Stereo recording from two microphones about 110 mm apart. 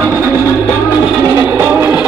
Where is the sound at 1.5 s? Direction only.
20° right (ahead or behind).